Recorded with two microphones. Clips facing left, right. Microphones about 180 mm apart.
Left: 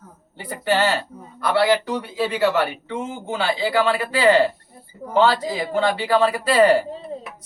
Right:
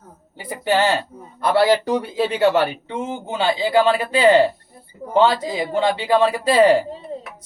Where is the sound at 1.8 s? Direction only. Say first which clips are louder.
Right 5 dB; 35° right (ahead or behind).